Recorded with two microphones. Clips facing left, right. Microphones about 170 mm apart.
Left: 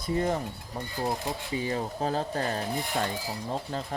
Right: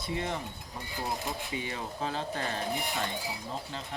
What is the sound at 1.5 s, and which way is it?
Speech, 40° left (ahead or behind).